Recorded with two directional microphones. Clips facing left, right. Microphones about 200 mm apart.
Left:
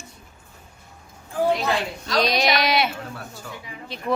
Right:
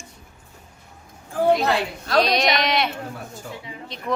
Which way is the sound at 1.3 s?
55° right (ahead or behind).